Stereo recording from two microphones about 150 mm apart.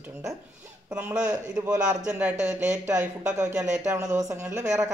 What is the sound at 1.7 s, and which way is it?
Speech, 20° right (ahead or behind).